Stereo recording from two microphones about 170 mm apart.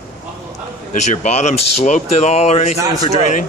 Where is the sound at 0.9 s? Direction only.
45° left (ahead or behind).